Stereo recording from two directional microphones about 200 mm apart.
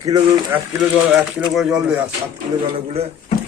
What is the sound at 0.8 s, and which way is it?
Speech, 5° right (ahead or behind).